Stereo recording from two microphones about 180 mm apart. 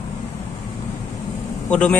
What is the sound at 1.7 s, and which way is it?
Speech, 5° left (ahead or behind).